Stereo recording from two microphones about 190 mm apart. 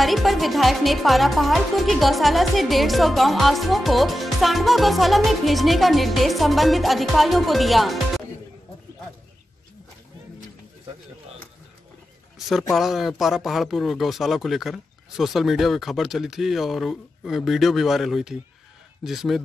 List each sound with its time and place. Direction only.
0.0 s speech: centre (ahead or behind)
12.7 s speech: centre (ahead or behind)